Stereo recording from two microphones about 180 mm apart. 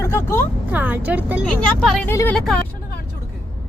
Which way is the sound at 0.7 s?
10° right (ahead or behind).